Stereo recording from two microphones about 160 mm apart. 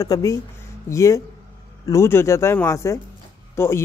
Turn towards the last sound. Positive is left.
turn(degrees=15)  # may be behind; listen again after turning